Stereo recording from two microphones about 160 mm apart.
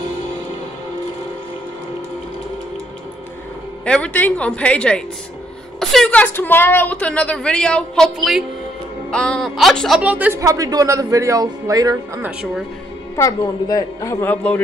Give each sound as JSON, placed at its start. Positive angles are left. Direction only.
{"t": 3.8, "sound": "a woman's voice", "side_deg": 5}
{"t": 12.3, "sound": "speech", "side_deg": -5}
{"t": 13.1, "sound": "a woman's voice", "side_deg": 20}